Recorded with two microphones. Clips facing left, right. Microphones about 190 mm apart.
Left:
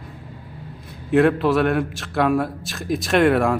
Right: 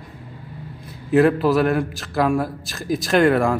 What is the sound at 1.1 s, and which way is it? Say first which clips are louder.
A man's voice: right 1 dB; centre (ahead or behind).